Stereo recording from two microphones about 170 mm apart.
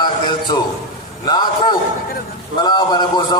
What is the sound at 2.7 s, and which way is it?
Speech, 25° left (ahead or behind).